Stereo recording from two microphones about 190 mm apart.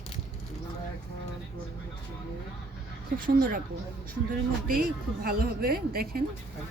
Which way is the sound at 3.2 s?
50° right (ahead or behind).